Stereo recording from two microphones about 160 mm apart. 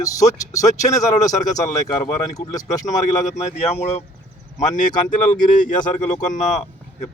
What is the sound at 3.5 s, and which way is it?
Speech, 40° left (ahead or behind).